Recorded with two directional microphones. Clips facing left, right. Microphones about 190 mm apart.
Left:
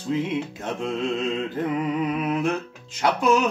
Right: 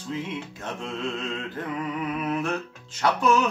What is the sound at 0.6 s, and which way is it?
Music, 15° left (ahead or behind).